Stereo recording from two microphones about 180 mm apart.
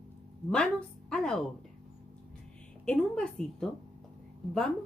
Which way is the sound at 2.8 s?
5° left (ahead or behind).